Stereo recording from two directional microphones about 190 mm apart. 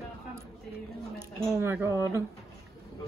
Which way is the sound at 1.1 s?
10° right (ahead or behind).